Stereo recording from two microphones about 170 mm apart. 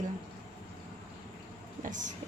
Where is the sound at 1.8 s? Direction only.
50° right (ahead or behind).